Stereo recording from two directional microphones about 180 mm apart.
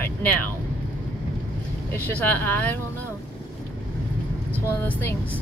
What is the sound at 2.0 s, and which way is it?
Speech, 10° left (ahead or behind).